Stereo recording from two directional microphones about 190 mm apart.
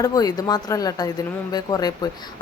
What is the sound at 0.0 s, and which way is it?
Speech, 20° left (ahead or behind).